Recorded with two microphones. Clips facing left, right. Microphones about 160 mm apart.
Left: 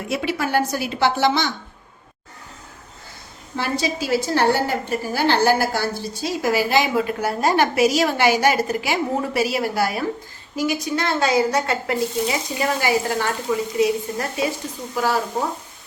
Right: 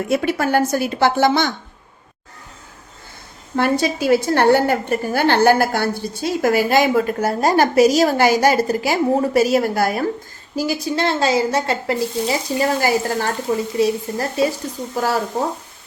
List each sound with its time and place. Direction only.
0.1 s a woman's voice: 50° right (ahead or behind)
3.5 s a woman's voice: 55° right (ahead or behind)
10.5 s a woman's voice: 35° right (ahead or behind)